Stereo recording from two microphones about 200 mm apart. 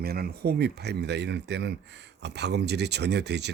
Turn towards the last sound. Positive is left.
turn(degrees=-60)  # may be behind; listen again after turning